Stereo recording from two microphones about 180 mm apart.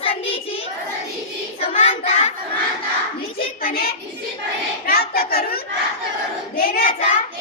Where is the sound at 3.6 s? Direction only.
55° left (ahead or behind).